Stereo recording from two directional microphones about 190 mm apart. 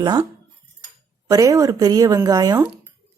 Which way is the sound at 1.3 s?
15° right (ahead or behind).